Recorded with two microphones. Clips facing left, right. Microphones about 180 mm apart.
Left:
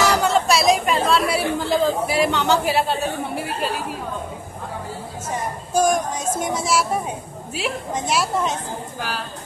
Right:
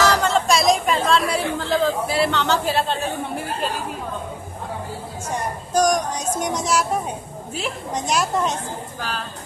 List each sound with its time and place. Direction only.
0.0 s chatter: 10° left (ahead or behind)
5.3 s a sound: 10° left (ahead or behind)
6.6 s a woman's voice: 5° left (ahead or behind)